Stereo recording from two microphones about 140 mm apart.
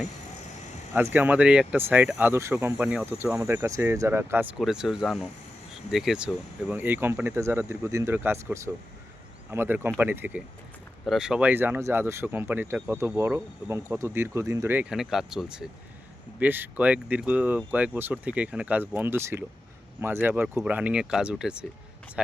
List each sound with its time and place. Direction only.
0.9 s speech: 15° right (ahead or behind)
4.5 s speech: 5° right (ahead or behind)
11.0 s speech: 5° right (ahead or behind)